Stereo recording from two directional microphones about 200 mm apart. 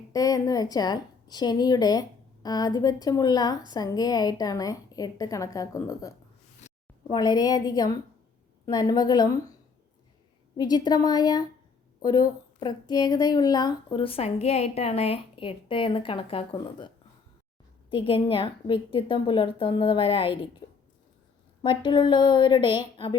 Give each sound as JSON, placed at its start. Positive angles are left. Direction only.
{"t": 0.1, "sound": "a woman's voice", "side_deg": 15}
{"t": 6.6, "sound": "a sound", "side_deg": 35}
{"t": 7.1, "sound": "a woman's voice", "side_deg": 20}
{"t": 10.6, "sound": "a woman's voice", "side_deg": 20}
{"t": 17.9, "sound": "a woman's voice", "side_deg": 25}
{"t": 20.6, "sound": "a sound", "side_deg": 25}
{"t": 21.6, "sound": "a woman's voice", "side_deg": 25}